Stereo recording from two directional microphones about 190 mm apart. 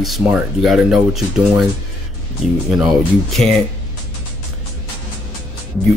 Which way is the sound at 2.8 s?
Centre (ahead or behind).